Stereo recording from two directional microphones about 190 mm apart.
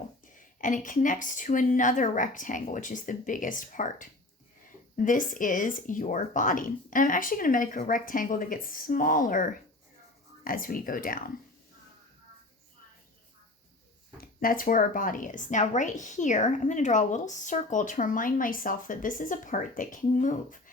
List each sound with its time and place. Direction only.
0.3 s speech: 45° left (ahead or behind)
14.2 s speech: 50° left (ahead or behind)